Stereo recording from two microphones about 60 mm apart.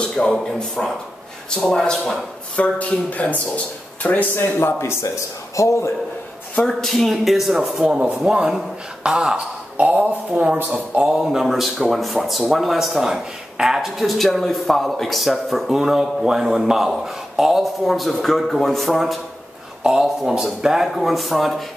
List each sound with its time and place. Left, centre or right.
0.0 s speech: centre
2.5 s speech: left
4.4 s speech: left
5.6 s a man's voice: left
6.7 s speech: centre
7.6 s speech: centre
11.1 s speech: centre